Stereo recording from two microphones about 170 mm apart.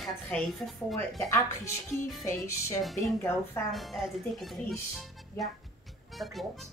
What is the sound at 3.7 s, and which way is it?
Speech, centre (ahead or behind).